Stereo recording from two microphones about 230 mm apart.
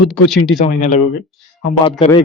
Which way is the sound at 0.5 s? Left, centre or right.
Left.